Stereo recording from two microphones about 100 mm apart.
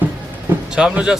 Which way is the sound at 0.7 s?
10° right (ahead or behind).